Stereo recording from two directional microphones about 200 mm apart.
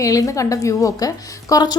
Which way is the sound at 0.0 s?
15° left (ahead or behind).